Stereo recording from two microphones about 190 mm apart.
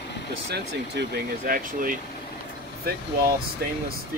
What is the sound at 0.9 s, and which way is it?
Speech, 55° right (ahead or behind).